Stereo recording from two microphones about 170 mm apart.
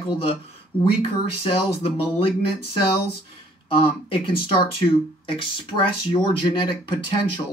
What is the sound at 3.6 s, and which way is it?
Speech, 35° left (ahead or behind).